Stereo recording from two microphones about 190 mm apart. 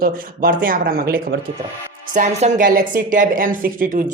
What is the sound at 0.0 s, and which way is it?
A woman's voice, 50° right (ahead or behind).